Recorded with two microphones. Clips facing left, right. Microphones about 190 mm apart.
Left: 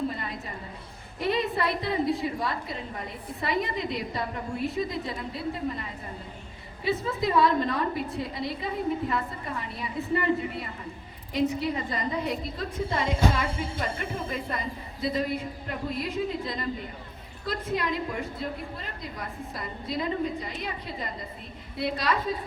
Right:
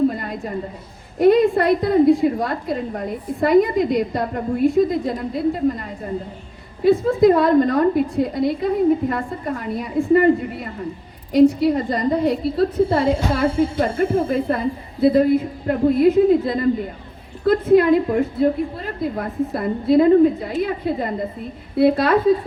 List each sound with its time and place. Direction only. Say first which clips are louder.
0.1 s a sound: right 8 dB; 50° right (ahead or behind)
1.2 s a woman's voice: right 13 dB; 50° right (ahead or behind)
11.3 s a woman's voice: right 13 dB; 40° right (ahead or behind)